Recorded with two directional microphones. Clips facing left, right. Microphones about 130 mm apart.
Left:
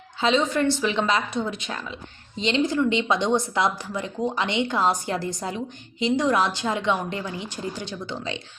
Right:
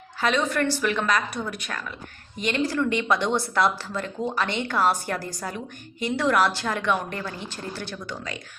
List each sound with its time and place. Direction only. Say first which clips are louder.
0.2 s a woman's voice: left 2 dB; 20° left (ahead or behind)